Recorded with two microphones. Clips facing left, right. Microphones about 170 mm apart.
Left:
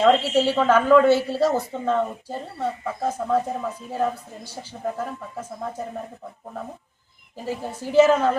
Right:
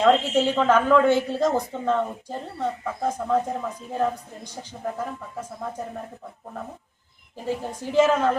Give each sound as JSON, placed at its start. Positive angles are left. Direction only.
{"t": 0.0, "sound": "speech", "side_deg": 10}
{"t": 7.4, "sound": "speech", "side_deg": 10}